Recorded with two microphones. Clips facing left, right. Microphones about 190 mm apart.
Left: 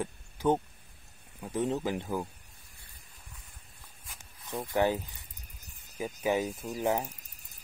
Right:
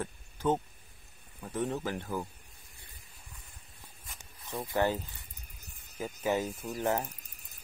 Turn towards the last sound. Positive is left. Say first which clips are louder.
# left 1 dB
turn(degrees=15)  # may be behind; listen again after turning